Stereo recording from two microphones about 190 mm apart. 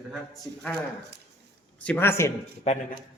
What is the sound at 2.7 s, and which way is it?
Speech, 35° left (ahead or behind).